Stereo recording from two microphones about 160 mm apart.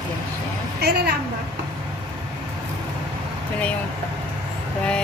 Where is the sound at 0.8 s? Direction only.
90° right.